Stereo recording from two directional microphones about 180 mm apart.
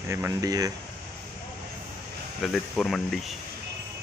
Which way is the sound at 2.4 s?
Centre (ahead or behind).